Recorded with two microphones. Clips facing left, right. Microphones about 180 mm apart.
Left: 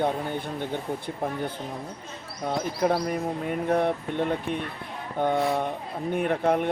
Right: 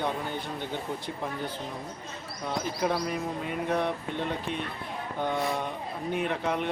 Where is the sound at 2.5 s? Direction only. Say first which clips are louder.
Left 4 dB; 50° left (ahead or behind).